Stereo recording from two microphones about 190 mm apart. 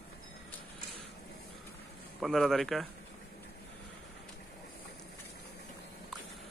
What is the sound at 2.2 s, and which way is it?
Speech, centre (ahead or behind).